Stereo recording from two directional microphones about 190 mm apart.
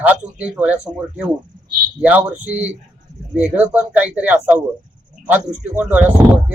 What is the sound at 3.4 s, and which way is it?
Speech, 35° right (ahead or behind).